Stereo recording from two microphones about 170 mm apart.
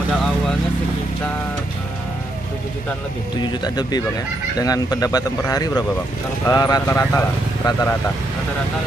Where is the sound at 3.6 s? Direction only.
25° left (ahead or behind).